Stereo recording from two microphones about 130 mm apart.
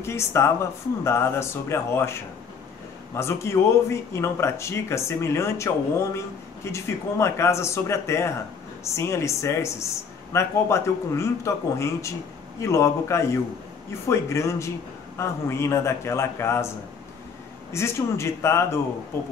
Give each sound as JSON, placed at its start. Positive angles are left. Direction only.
{"t": 0.0, "sound": "speech", "side_deg": 20}
{"t": 17.7, "sound": "speech", "side_deg": 20}